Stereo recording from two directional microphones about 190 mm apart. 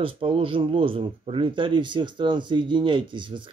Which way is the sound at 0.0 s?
30° right (ahead or behind).